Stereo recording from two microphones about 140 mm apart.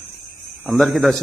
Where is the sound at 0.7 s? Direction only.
Centre (ahead or behind).